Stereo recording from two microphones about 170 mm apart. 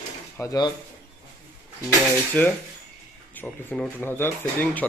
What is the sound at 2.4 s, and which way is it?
Speech, 10° left (ahead or behind).